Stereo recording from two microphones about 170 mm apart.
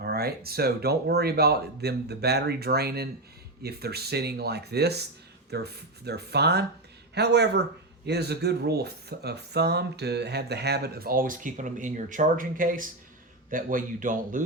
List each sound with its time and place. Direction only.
0.0 s speech: 65° right (ahead or behind)